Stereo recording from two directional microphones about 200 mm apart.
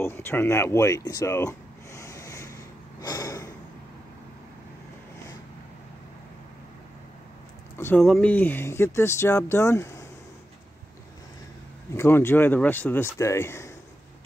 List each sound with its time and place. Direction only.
0.0 s speech: 10° left (ahead or behind)
2.0 s snort: 15° left (ahead or behind)
3.0 s a sound: 20° left (ahead or behind)
7.7 s speech: 10° left (ahead or behind)
11.9 s speech: 10° left (ahead or behind)